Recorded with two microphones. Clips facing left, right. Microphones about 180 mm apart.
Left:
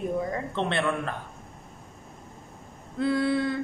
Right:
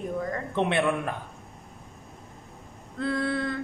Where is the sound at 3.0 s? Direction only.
5° left (ahead or behind).